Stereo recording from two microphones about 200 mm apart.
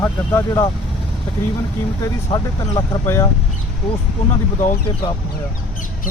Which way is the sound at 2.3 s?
20° left (ahead or behind).